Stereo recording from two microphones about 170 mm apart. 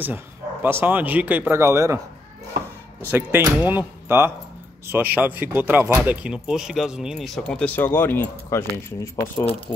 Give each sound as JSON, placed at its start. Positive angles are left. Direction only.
{"t": 0.0, "sound": "a man's voice", "side_deg": -10}
{"t": 3.1, "sound": "a man's voice", "side_deg": -15}